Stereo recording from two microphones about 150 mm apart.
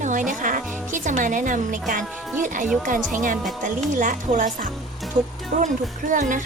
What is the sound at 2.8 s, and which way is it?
A woman's voice, 60° right (ahead or behind).